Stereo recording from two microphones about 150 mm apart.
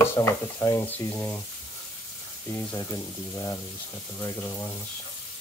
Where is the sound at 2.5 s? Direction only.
20° left (ahead or behind).